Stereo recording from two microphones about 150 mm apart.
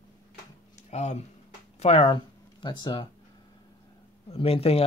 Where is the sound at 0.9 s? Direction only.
50° left (ahead or behind).